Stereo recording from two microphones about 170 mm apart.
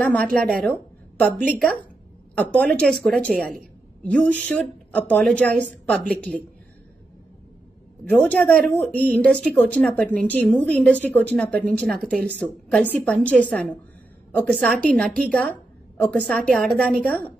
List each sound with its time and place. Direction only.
0.0 s a woman's voice: 5° left (ahead or behind)
8.1 s a woman's voice: 5° left (ahead or behind)